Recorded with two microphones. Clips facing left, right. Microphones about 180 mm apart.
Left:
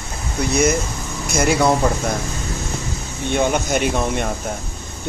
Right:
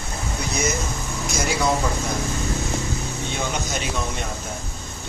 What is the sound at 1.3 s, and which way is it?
Speech, 60° left (ahead or behind).